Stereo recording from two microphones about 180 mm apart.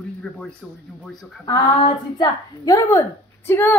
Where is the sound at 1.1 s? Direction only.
20° left (ahead or behind).